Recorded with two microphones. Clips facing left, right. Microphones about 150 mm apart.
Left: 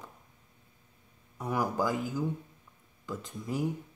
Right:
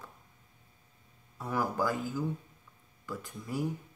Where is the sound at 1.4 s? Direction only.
15° left (ahead or behind).